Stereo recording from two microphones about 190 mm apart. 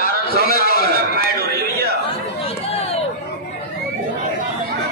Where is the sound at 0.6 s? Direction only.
50° left (ahead or behind).